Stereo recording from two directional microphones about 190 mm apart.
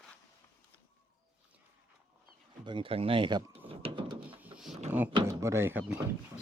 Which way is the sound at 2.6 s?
25° right (ahead or behind).